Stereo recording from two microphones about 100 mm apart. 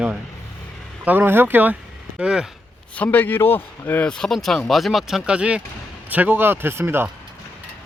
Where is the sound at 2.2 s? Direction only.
10° right (ahead or behind).